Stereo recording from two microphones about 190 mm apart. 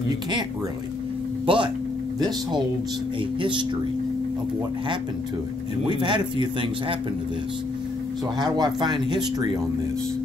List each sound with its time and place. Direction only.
1.4 s speech: 25° right (ahead or behind)
5.9 s speech: 25° right (ahead or behind)
8.4 s speech: 20° right (ahead or behind)